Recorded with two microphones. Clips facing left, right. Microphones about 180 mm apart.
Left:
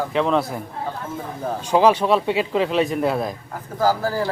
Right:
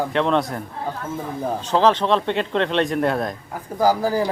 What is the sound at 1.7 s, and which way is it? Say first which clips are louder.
Speech: left 2 dB; 10° left (ahead or behind).